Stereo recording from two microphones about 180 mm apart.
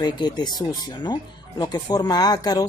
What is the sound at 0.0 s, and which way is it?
Speech, 25° left (ahead or behind).